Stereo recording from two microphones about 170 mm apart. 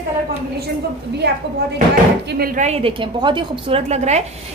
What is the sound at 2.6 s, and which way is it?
A woman's voice, 40° right (ahead or behind).